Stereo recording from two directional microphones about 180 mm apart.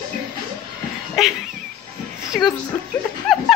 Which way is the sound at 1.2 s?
Centre (ahead or behind).